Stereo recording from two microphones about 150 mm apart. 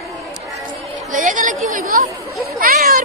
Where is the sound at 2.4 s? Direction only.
70° right (ahead or behind).